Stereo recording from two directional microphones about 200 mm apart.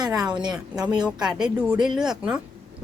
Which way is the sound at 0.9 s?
20° right (ahead or behind).